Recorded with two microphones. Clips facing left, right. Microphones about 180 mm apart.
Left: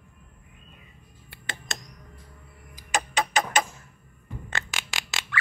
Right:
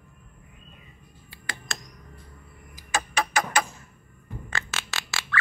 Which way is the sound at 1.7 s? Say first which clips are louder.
Even; 20° left (ahead or behind).